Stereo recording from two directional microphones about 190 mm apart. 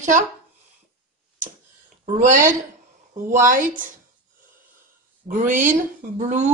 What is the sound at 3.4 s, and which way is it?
Speech, 45° right (ahead or behind).